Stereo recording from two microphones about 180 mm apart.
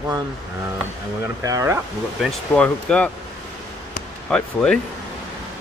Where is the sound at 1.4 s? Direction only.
15° right (ahead or behind).